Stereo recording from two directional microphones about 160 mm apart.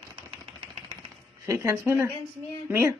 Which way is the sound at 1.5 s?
15° right (ahead or behind).